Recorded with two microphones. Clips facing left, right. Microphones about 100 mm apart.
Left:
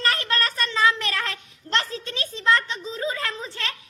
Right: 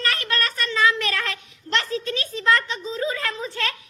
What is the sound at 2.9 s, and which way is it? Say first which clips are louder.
Speech: right 2 dB; 25° left (ahead or behind).